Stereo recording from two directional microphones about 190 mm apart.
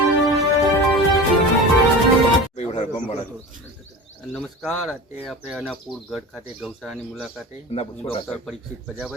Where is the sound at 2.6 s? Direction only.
35° left (ahead or behind).